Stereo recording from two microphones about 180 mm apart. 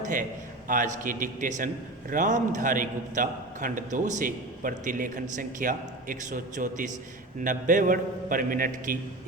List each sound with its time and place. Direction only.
0.0 s a man's voice: 45° right (ahead or behind)